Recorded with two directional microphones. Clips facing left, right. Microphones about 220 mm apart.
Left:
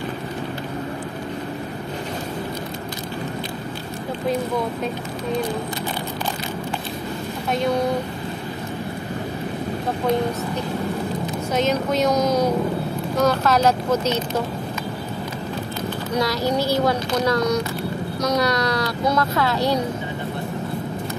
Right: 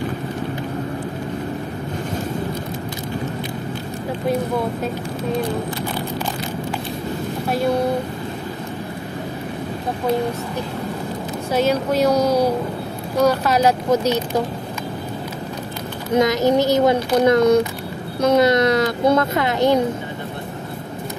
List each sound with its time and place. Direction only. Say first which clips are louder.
11.5 s speech: right 3 dB; 10° right (ahead or behind)
16.2 s speech: right 6 dB; 20° right (ahead or behind)